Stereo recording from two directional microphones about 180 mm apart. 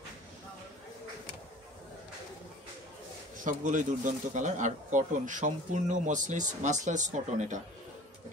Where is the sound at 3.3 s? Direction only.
45° right (ahead or behind).